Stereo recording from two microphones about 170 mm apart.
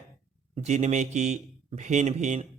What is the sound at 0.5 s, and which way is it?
Speech, 40° right (ahead or behind).